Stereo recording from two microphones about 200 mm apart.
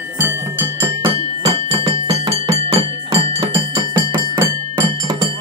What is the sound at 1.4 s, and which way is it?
Music, 30° right (ahead or behind).